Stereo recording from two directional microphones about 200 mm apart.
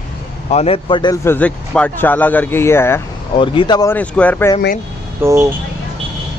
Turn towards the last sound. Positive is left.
turn(degrees=-15)  # may be behind; listen again after turning